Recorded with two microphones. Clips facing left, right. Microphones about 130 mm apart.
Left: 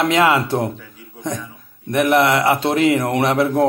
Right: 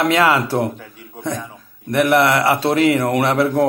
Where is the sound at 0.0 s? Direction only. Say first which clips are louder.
Even; 20° left (ahead or behind).